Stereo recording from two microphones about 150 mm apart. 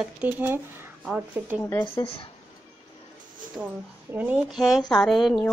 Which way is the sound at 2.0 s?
40° left (ahead or behind).